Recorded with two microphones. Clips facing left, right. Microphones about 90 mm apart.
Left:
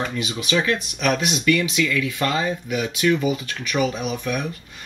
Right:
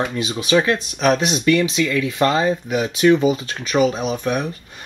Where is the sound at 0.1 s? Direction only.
25° right (ahead or behind).